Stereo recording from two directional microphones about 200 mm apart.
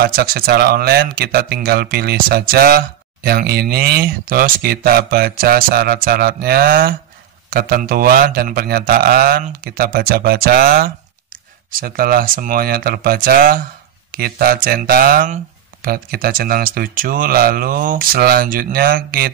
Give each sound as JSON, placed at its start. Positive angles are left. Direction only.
{"t": 0.0, "sound": "speech", "side_deg": -50}